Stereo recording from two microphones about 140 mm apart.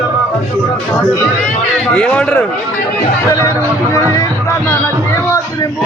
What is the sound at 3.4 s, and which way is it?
Speech, 20° left (ahead or behind).